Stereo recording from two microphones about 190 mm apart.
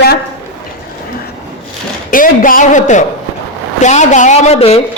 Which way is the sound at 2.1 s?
45° left (ahead or behind).